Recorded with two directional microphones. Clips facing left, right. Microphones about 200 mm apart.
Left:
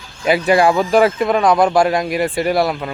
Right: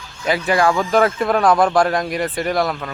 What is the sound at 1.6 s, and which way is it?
Speech, 25° left (ahead or behind).